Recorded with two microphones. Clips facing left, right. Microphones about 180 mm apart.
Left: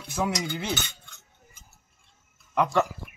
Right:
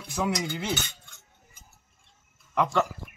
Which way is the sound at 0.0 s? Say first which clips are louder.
Left 1 dB; centre (ahead or behind).